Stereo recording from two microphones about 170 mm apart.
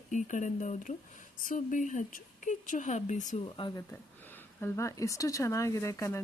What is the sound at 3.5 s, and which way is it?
Speech, 30° left (ahead or behind).